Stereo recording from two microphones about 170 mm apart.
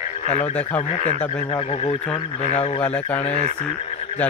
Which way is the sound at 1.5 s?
35° left (ahead or behind).